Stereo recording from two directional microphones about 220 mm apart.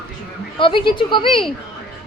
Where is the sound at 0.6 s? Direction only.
20° left (ahead or behind).